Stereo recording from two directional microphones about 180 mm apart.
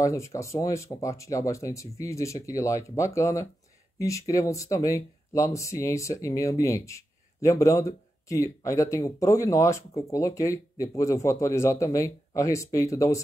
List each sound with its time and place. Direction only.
0.0 s speech: 15° left (ahead or behind)